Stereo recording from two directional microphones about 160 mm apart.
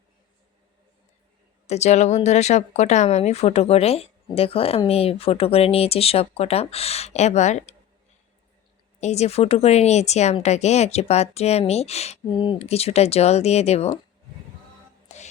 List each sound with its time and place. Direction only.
1.6 s speech: 45° left (ahead or behind)
9.0 s speech: 45° left (ahead or behind)
12.3 s speech: 30° left (ahead or behind)
15.0 s music: 45° left (ahead or behind)